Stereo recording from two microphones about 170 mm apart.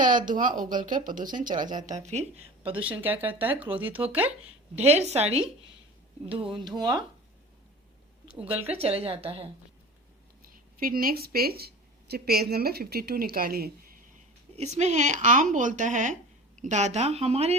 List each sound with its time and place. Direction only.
0.3 s speech: 50° right (ahead or behind)
2.6 s speech: 10° right (ahead or behind)
4.7 s a woman's voice: 40° right (ahead or behind)
8.4 s a woman's voice: 35° right (ahead or behind)
10.5 s speech: 60° right (ahead or behind)
14.5 s a woman's voice: 40° right (ahead or behind)